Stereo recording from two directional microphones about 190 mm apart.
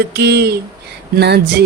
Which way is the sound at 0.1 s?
60° right (ahead or behind).